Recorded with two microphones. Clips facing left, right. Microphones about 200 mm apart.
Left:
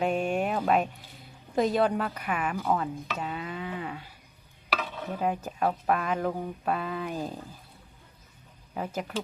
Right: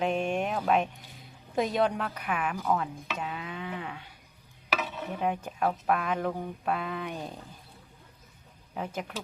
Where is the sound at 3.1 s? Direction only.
Centre (ahead or behind).